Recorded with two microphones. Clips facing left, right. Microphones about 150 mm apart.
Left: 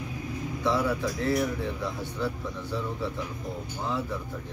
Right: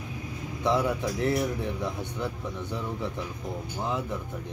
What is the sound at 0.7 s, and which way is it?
Speech, 20° right (ahead or behind).